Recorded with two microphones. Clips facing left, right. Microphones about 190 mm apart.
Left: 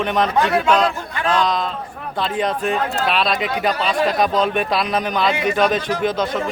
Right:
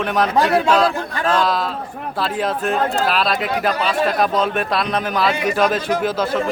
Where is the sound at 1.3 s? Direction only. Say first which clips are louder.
Even; 5° right (ahead or behind).